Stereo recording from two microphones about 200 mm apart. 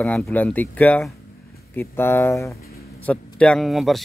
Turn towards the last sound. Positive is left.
turn(degrees=0)  # may be behind; listen again after turning